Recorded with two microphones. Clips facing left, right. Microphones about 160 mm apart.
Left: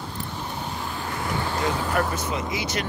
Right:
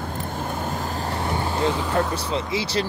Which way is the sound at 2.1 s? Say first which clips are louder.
Right 3 dB; 30° right (ahead or behind).